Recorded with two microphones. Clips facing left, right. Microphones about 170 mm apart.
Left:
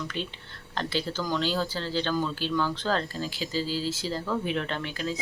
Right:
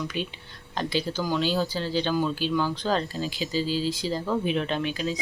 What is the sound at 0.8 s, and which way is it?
Speech, 15° right (ahead or behind).